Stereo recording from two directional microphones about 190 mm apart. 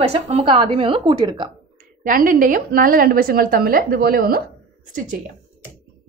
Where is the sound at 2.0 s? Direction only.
45° right (ahead or behind).